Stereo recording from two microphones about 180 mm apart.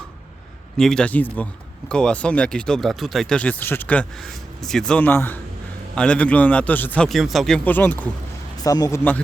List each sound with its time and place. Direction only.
0.8 s a man's voice: 5° left (ahead or behind); by 9.0 s 20° left (ahead or behind)